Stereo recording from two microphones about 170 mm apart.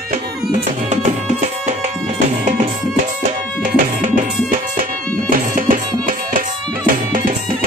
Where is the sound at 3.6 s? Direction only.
50° right (ahead or behind).